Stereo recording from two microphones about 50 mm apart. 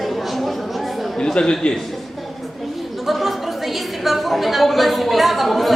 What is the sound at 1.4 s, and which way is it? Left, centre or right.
Speech, centre.